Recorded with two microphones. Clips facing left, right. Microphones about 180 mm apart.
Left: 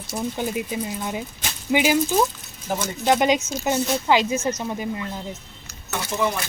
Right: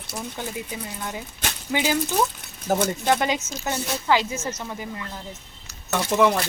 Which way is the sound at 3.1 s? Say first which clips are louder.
Left 7 dB; 20° left (ahead or behind).